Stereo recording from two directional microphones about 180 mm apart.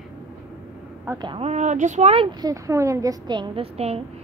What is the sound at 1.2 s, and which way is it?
Speech, 30° right (ahead or behind).